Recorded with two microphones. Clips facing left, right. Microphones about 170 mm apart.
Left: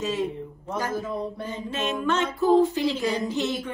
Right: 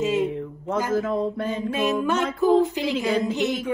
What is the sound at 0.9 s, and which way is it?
Mantra, 90° right.